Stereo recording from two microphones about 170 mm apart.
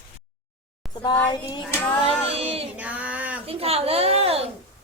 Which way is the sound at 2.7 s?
10° right (ahead or behind).